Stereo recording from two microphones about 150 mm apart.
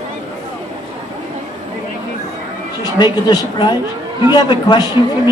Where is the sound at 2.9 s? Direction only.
30° left (ahead or behind).